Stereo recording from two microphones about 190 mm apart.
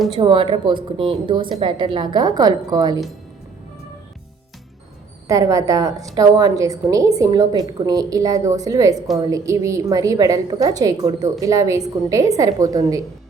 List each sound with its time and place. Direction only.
0.2 s a woman's voice: 25° right (ahead or behind)
5.3 s a woman's voice: 15° right (ahead or behind)